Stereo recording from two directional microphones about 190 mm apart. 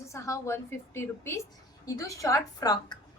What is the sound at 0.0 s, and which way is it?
A woman's voice, 15° left (ahead or behind).